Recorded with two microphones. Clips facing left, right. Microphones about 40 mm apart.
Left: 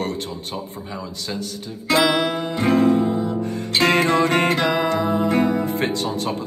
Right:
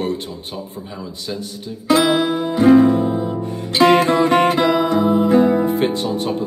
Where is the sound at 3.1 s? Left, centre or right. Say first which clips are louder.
Right 1 dB; right.